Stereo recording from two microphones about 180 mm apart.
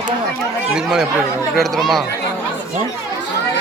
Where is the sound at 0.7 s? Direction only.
5° right (ahead or behind).